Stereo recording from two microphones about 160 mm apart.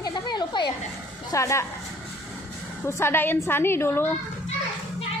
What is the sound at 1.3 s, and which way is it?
Speech, 20° left (ahead or behind).